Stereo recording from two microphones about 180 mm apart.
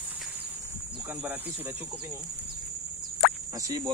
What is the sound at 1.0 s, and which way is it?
Speech, 10° right (ahead or behind).